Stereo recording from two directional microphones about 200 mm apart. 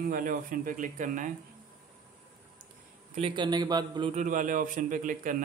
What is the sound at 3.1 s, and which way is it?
Speech, 25° right (ahead or behind).